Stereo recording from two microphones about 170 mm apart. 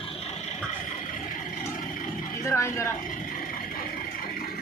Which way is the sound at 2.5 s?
15° left (ahead or behind).